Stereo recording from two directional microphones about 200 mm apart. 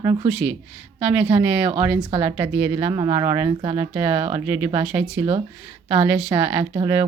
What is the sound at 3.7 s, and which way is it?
Speech, 10° right (ahead or behind).